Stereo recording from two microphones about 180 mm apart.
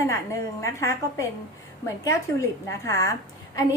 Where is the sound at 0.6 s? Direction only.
15° left (ahead or behind).